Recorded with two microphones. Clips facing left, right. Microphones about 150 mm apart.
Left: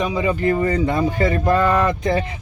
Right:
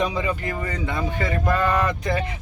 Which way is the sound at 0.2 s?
30° left (ahead or behind).